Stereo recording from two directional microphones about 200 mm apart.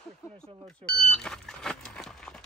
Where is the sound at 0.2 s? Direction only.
15° left (ahead or behind).